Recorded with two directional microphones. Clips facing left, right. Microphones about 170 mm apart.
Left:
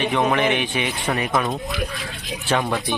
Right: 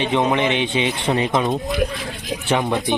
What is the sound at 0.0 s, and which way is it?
Speech, 20° right (ahead or behind).